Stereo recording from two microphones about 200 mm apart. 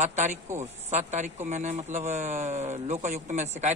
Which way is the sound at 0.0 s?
35° right (ahead or behind).